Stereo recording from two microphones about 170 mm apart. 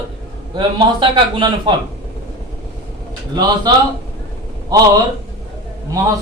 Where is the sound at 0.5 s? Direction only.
30° right (ahead or behind).